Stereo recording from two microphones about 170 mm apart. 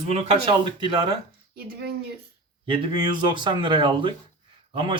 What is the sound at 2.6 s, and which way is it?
Speech, 30° right (ahead or behind).